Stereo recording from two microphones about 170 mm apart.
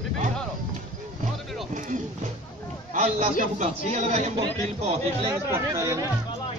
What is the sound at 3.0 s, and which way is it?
A man's voice, 40° right (ahead or behind).